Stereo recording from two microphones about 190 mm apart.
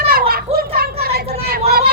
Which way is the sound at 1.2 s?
30° right (ahead or behind).